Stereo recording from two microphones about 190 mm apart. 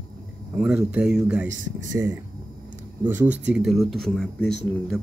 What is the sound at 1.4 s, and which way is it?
Speech, 80° right.